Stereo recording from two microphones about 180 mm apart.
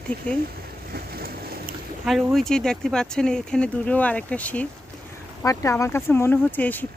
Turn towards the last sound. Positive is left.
turn(degrees=10)  # may be behind; listen again after turning